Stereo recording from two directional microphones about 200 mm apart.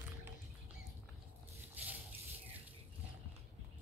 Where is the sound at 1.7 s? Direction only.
10° right (ahead or behind).